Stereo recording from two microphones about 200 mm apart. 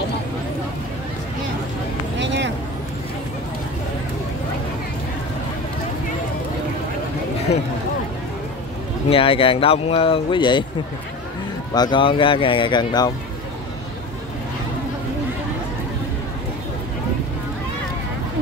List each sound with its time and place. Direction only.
2.1 s a sound: 65° right (ahead or behind)
9.1 s speech: 25° left (ahead or behind)
11.7 s speech: 20° left (ahead or behind)